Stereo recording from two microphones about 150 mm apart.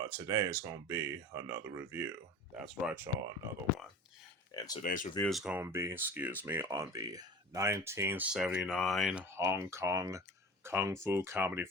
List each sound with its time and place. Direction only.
0.0 s speech: 20° right (ahead or behind)
2.6 s speech: 5° right (ahead or behind)
4.5 s speech: 25° left (ahead or behind)
4.8 s speech: 60° left (ahead or behind)
5.2 s speech: centre (ahead or behind)
5.5 s speech: 15° right (ahead or behind)
8.6 s speech: 5° left (ahead or behind)
9.3 s speech: 15° right (ahead or behind)